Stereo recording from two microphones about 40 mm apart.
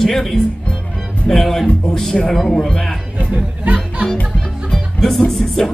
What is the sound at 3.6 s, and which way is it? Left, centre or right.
Speech, right.